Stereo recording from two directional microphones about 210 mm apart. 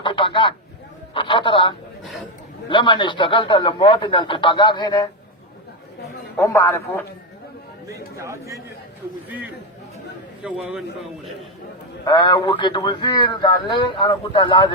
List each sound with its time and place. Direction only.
0.0 s a sound: 25° left (ahead or behind)
1.1 s a man's voice: 25° left (ahead or behind)
6.3 s a man's voice: 15° left (ahead or behind)
7.9 s speech: 15° right (ahead or behind)
10.4 s a man's voice: 5° right (ahead or behind)
12.0 s a man's voice: 20° left (ahead or behind)